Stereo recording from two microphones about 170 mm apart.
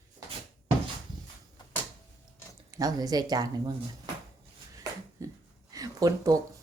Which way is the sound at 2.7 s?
20° right (ahead or behind).